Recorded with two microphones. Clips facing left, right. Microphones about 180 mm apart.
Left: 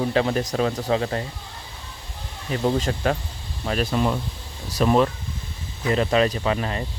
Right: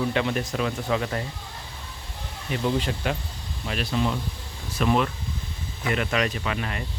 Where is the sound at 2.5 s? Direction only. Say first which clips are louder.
Left 3 dB; 40° left (ahead or behind).